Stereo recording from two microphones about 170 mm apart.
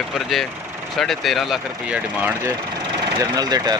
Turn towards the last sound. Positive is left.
turn(degrees=-20)  # may be behind; listen again after turning